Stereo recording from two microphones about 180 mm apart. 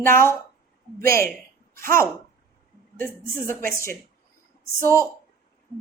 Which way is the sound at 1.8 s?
15° left (ahead or behind).